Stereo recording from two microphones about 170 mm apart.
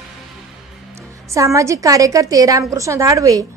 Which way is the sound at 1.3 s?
20° right (ahead or behind).